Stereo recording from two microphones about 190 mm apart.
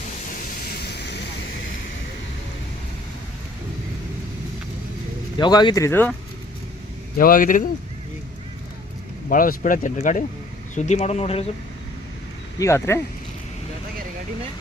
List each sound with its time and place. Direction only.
0.8 s vehicle: 60° left (ahead or behind)
5.4 s speech: 20° left (ahead or behind)
7.2 s speech: 45° left (ahead or behind)
9.3 s speech: 45° left (ahead or behind)
12.5 s speech: 15° left (ahead or behind)